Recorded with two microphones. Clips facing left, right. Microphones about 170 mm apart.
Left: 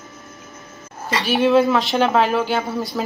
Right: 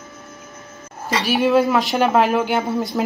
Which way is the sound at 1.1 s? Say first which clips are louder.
Left 1 dB; 10° right (ahead or behind).